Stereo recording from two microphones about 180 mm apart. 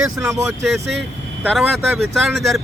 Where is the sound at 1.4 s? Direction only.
Centre (ahead or behind).